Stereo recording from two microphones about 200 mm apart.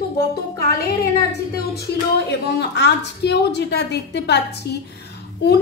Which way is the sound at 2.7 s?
55° left (ahead or behind).